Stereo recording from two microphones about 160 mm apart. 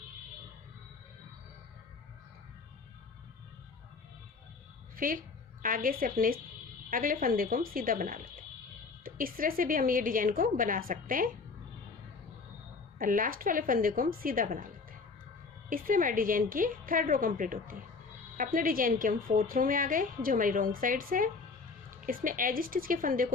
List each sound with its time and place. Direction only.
4.9 s a woman's voice: 60° right (ahead or behind)
13.0 s a woman's voice: 60° right (ahead or behind)
15.7 s a woman's voice: 60° right (ahead or behind)